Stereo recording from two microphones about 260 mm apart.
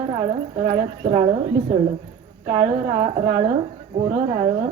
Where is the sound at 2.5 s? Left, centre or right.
Right.